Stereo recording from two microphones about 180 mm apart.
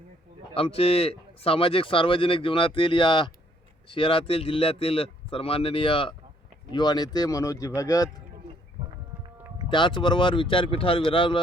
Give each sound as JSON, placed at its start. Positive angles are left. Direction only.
{"t": 0.5, "sound": "speech", "side_deg": 30}
{"t": 9.6, "sound": "speech", "side_deg": 25}